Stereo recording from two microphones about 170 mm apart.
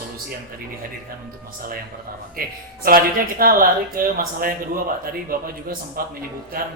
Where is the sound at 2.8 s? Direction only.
60° right (ahead or behind).